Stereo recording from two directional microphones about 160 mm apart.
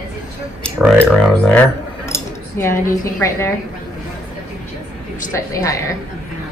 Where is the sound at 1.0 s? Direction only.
5° left (ahead or behind).